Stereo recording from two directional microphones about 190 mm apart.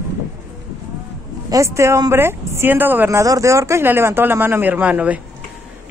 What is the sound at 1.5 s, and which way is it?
Speech, 15° right (ahead or behind).